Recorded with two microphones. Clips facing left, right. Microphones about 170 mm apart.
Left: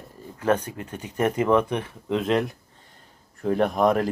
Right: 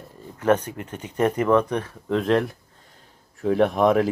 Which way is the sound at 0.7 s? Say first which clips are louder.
Right 1 dB; 30° right (ahead or behind).